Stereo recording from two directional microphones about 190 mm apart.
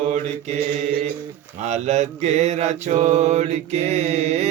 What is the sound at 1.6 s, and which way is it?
Mantra, 35° right (ahead or behind).